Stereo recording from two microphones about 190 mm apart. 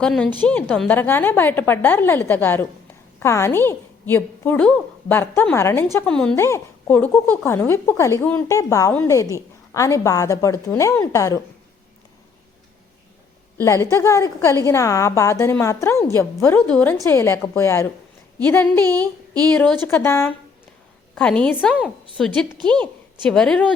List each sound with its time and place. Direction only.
0.0 s a woman's voice: 5° left (ahead or behind)
13.6 s a woman's voice: 15° left (ahead or behind)
18.8 s speech: 20° right (ahead or behind)
19.5 s a woman's voice: 10° left (ahead or behind)